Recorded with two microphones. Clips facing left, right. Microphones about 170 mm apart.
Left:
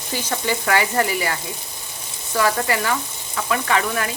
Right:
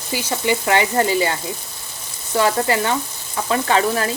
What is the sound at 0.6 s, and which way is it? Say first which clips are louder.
A woman's voice: right 1 dB; 25° right (ahead or behind).